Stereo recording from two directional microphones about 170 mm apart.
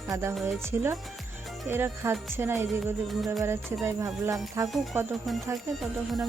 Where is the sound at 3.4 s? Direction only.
15° right (ahead or behind).